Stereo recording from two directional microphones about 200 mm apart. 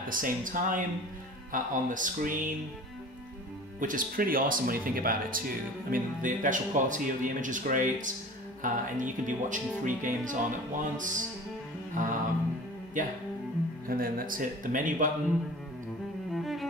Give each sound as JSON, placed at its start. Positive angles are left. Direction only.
{"t": 0.1, "sound": "speech", "side_deg": -40}
{"t": 3.8, "sound": "speech", "side_deg": -45}
{"t": 11.9, "sound": "music", "side_deg": -40}
{"t": 13.0, "sound": "speech", "side_deg": -40}